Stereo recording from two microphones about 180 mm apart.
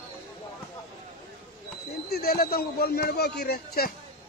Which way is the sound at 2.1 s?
55° left (ahead or behind).